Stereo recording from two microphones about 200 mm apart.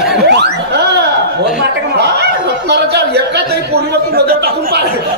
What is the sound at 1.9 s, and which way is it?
Speech, 55° right (ahead or behind).